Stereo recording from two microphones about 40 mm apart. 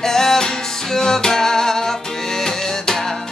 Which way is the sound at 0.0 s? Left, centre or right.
Centre.